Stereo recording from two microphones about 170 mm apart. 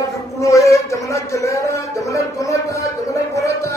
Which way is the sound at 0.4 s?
20° left (ahead or behind).